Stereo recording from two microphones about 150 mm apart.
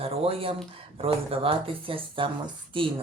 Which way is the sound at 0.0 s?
40° right (ahead or behind).